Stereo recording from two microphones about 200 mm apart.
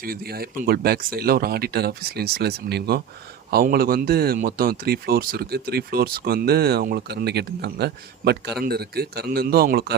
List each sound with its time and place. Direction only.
0.0 s speech: 50° right (ahead or behind)